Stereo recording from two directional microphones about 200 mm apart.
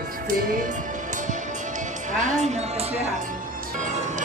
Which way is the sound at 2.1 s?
35° right (ahead or behind).